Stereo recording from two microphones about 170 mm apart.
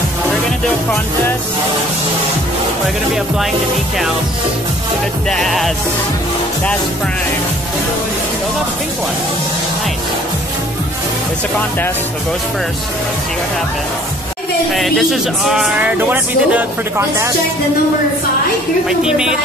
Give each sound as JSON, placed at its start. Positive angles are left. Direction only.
{"t": 5.3, "sound": "speech", "side_deg": 0}
{"t": 14.7, "sound": "speech", "side_deg": 0}
{"t": 18.9, "sound": "speech", "side_deg": -5}